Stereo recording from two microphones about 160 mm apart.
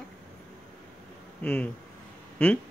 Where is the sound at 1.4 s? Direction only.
10° left (ahead or behind).